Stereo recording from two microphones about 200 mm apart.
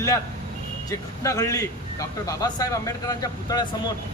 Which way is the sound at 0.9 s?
15° left (ahead or behind).